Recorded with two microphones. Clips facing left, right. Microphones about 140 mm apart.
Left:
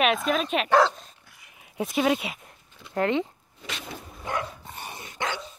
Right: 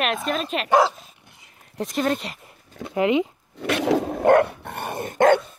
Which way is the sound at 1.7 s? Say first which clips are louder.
Even; 5° left (ahead or behind).